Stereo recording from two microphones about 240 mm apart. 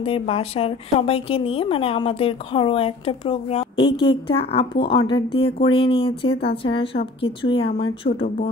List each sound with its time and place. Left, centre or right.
0.0 s a woman's voice: left